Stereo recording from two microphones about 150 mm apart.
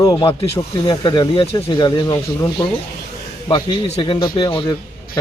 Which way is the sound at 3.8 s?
40° left (ahead or behind).